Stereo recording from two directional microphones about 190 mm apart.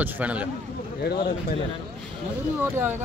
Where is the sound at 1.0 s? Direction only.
55° left (ahead or behind).